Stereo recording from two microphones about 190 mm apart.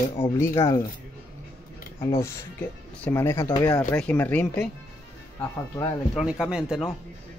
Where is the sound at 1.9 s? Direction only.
15° left (ahead or behind).